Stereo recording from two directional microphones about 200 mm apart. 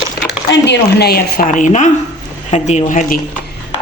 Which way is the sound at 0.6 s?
55° left (ahead or behind).